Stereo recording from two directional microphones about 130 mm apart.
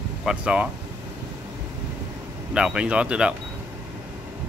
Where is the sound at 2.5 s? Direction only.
5° right (ahead or behind).